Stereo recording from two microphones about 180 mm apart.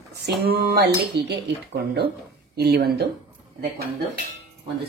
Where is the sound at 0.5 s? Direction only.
65° right (ahead or behind).